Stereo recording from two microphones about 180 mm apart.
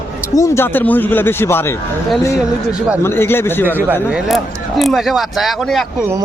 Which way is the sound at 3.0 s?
10° left (ahead or behind).